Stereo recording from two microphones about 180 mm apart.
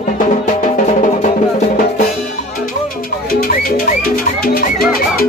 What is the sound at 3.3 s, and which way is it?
Music, 50° left (ahead or behind).